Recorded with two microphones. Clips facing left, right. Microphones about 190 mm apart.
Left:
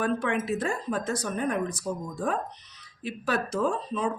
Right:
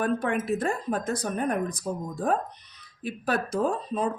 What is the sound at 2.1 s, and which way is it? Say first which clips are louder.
Speech: right 4 dB; 35° right (ahead or behind).